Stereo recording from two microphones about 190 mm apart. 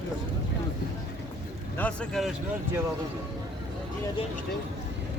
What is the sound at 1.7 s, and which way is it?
Speech, 5° left (ahead or behind).